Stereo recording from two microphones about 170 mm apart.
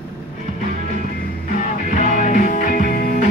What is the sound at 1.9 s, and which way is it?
Music, 50° left (ahead or behind).